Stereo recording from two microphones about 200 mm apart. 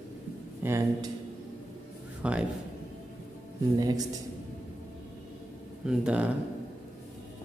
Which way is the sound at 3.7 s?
20° right (ahead or behind).